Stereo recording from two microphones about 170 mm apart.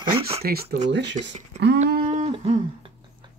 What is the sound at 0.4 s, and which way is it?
Speech, 65° right (ahead or behind).